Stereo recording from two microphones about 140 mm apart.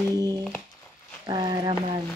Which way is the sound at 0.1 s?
25° right (ahead or behind).